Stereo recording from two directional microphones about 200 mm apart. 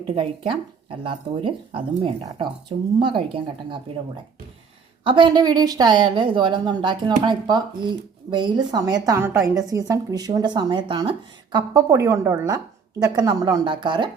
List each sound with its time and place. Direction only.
0.1 s a woman's voice: 25° right (ahead or behind)
5.0 s a woman's voice: 25° right (ahead or behind)